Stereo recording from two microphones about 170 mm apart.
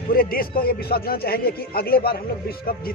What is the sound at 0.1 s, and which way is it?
Speech, 60° left (ahead or behind).